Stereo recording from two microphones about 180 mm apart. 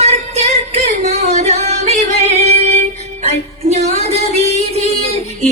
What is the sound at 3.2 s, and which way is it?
Music, 40° right (ahead or behind).